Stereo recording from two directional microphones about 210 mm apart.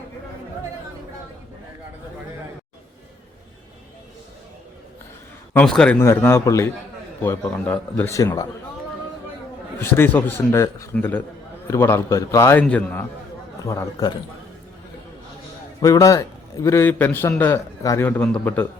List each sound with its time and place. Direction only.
5.5 s a man's voice: 5° left (ahead or behind)
9.8 s a man's voice: 10° left (ahead or behind)
15.8 s a man's voice: 15° left (ahead or behind)